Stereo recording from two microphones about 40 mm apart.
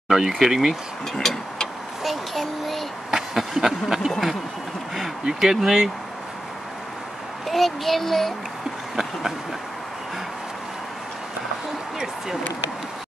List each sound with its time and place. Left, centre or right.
0.1 s speech: centre
1.2 s vehicle: centre
3.1 s a sound: centre
4.9 s speech: centre
7.4 s a child's voice: centre